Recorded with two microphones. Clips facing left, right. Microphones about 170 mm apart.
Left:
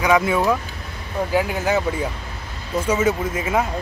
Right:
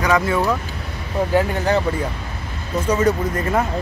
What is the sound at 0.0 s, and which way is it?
Speech, 10° left (ahead or behind).